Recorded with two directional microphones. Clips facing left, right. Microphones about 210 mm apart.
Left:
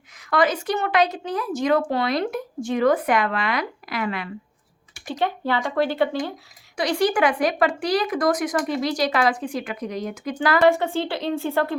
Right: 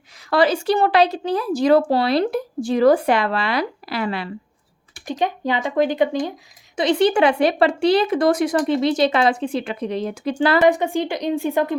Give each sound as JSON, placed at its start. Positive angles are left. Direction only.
{"t": 0.3, "sound": "speech", "side_deg": -30}
{"t": 5.0, "sound": "speech", "side_deg": -15}
{"t": 10.7, "sound": "speech", "side_deg": -15}